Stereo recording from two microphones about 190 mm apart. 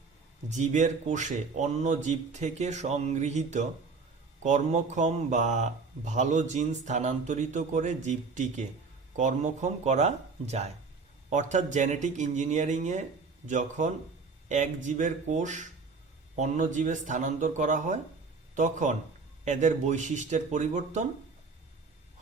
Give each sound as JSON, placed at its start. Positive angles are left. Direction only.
{"t": 0.4, "sound": "speech", "side_deg": -40}